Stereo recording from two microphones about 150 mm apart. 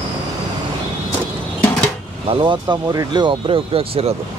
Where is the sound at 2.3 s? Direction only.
30° right (ahead or behind).